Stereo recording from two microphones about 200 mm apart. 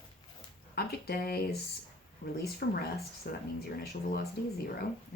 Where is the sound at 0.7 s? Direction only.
50° left (ahead or behind).